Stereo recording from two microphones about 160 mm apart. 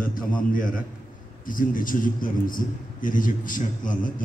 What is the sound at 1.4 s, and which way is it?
A man's voice, 60° left (ahead or behind).